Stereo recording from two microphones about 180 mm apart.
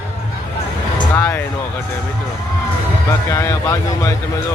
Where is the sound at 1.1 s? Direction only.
15° left (ahead or behind).